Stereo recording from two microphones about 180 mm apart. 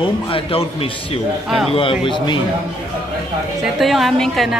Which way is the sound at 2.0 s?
25° left (ahead or behind).